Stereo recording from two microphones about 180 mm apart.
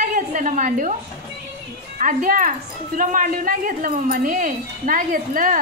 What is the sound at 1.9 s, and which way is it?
Speech, 50° right (ahead or behind).